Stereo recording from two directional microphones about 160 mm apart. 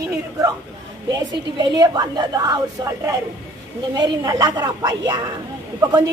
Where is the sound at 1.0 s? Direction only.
25° right (ahead or behind).